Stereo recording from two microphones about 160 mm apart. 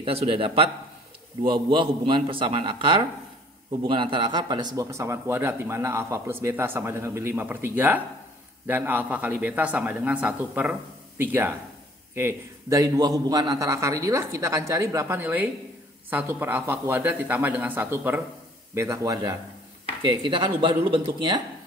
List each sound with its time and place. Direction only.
0.0 s a man's voice: 35° right (ahead or behind)